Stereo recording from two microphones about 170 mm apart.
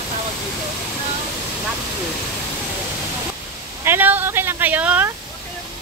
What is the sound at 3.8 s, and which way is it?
Speech, 10° right (ahead or behind).